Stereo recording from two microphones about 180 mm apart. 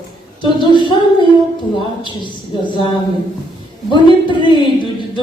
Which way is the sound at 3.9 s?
25° left (ahead or behind).